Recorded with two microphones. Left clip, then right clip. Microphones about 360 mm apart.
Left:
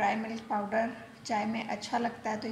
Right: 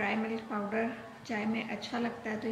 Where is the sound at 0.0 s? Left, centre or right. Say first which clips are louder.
Left 3 dB; centre.